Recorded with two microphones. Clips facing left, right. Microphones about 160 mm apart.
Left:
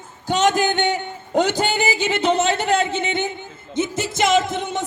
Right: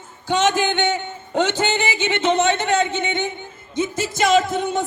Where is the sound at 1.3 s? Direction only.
10° left (ahead or behind).